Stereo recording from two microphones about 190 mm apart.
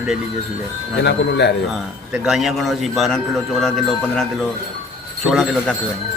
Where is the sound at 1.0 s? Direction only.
65° left (ahead or behind).